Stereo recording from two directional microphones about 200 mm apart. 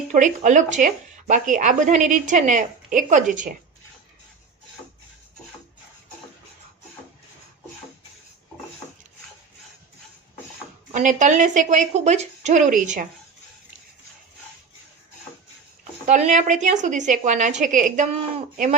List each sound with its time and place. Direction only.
0.1 s speech: 40° right (ahead or behind)
10.9 s speech: 35° right (ahead or behind)
16.0 s speech: 35° right (ahead or behind)